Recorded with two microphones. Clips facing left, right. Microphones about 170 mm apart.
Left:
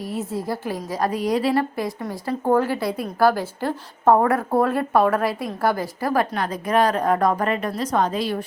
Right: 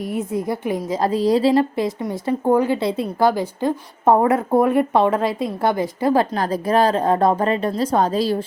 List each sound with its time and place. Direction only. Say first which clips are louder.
0.1 s a woman's voice: right 3 dB; 20° right (ahead or behind)